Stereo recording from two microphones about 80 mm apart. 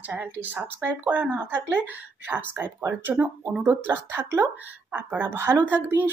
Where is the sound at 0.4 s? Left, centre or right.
Right.